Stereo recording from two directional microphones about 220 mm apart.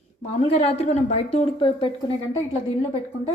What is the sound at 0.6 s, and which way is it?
A woman's voice, 30° left (ahead or behind).